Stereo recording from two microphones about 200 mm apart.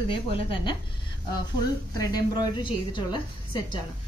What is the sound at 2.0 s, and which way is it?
A woman's voice, 20° left (ahead or behind).